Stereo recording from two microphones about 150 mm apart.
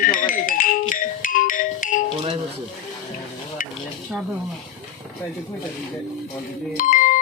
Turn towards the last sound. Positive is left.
turn(degrees=60)  # may be behind; listen again after turning